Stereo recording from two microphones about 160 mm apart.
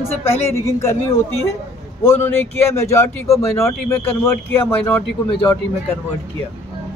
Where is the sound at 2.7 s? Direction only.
20° left (ahead or behind).